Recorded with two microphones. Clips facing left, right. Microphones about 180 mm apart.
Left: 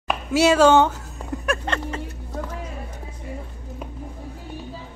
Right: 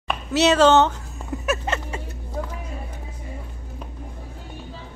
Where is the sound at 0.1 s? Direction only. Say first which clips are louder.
Left 1 dB; 10° left (ahead or behind).